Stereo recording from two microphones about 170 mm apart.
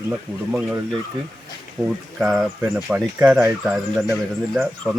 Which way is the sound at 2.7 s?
15° right (ahead or behind).